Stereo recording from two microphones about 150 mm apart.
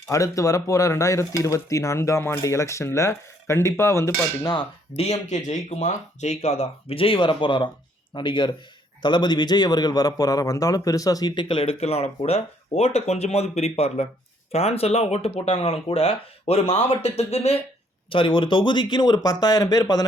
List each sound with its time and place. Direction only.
0.1 s speech: 20° left (ahead or behind)
4.9 s a man's voice: 45° left (ahead or behind); by 20.1 s 25° left (ahead or behind)